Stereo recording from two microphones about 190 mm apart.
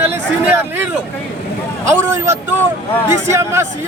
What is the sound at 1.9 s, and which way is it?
A man's voice, 15° right (ahead or behind).